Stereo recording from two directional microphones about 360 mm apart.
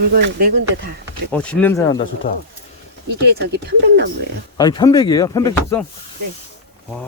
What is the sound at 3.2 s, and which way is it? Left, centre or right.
Speech, right.